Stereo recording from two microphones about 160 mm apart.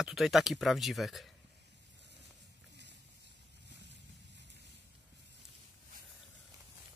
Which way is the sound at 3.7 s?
90° right.